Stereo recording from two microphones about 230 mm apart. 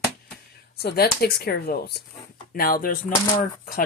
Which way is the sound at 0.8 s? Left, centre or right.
Left.